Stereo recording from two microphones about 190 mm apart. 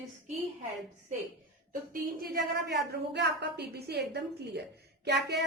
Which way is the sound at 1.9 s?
50° right (ahead or behind).